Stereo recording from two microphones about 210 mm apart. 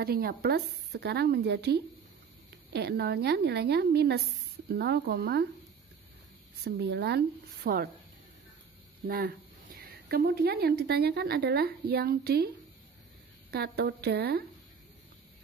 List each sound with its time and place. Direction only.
0.0 s speech: 45° right (ahead or behind)
6.6 s speech: 50° right (ahead or behind)
9.0 s a woman's voice: 45° right (ahead or behind)
13.5 s speech: 50° right (ahead or behind)